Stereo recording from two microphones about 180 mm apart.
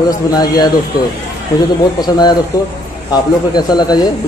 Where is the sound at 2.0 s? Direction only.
25° left (ahead or behind).